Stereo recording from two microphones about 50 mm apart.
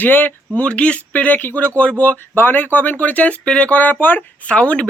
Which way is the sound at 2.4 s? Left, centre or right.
Left.